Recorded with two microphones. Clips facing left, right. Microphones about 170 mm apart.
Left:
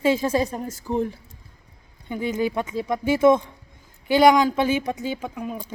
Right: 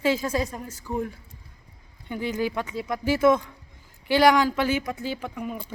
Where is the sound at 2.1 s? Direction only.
20° left (ahead or behind).